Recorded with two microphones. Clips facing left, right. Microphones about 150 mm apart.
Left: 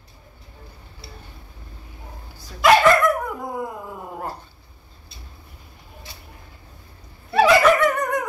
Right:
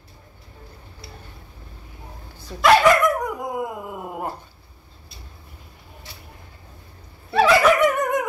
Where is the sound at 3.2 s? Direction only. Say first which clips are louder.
Right 2 dB; 20° right (ahead or behind).